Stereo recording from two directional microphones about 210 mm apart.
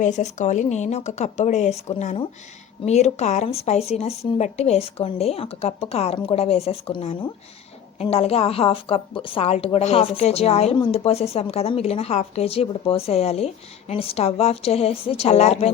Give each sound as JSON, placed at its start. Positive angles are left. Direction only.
{"t": 0.0, "sound": "a woman's voice", "side_deg": 35}